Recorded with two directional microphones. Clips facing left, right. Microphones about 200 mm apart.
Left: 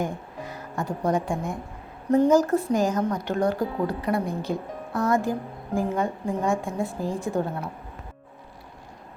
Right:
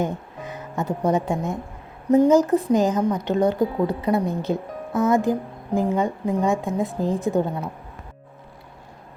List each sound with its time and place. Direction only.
0.0 s speech: 20° right (ahead or behind)